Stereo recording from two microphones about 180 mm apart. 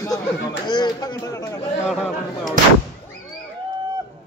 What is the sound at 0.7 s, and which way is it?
Speech, 25° left (ahead or behind).